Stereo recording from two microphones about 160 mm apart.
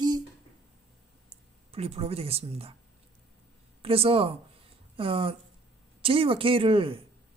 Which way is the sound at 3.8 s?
35° right (ahead or behind).